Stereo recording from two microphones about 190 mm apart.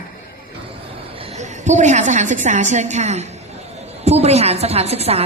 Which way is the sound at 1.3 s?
40° right (ahead or behind).